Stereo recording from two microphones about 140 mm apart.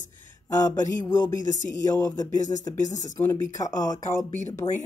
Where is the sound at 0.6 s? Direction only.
30° left (ahead or behind).